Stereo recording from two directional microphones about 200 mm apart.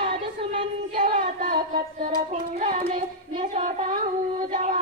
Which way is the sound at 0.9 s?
40° right (ahead or behind).